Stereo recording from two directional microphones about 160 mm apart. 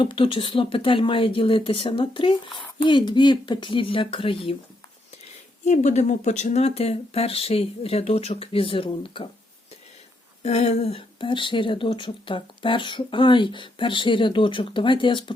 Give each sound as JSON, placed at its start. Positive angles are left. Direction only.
{"t": 0.0, "sound": "speech", "side_deg": 35}
{"t": 5.6, "sound": "speech", "side_deg": 45}
{"t": 10.4, "sound": "speech", "side_deg": 45}